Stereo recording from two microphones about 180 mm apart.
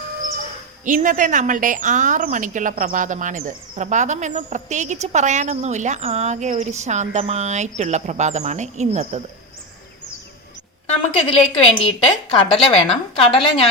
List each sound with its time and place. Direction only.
0.9 s speech: 45° right (ahead or behind)
11.3 s a woman's voice: 30° left (ahead or behind)